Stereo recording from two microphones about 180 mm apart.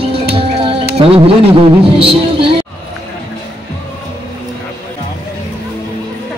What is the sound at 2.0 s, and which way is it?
Speech, 30° right (ahead or behind).